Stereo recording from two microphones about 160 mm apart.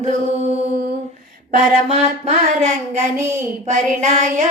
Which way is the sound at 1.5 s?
45° right (ahead or behind).